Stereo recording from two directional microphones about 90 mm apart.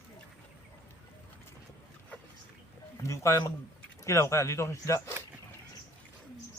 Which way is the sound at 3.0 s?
35° left (ahead or behind).